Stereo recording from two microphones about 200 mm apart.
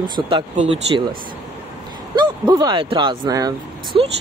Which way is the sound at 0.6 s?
25° right (ahead or behind).